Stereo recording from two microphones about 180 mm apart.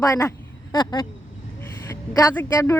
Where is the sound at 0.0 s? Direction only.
20° left (ahead or behind).